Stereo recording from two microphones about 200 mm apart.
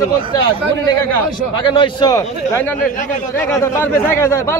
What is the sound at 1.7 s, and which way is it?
A man's voice, 20° left (ahead or behind).